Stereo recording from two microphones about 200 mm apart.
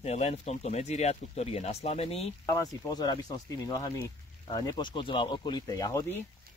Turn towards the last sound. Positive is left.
turn(degrees=15)  # may be behind; listen again after turning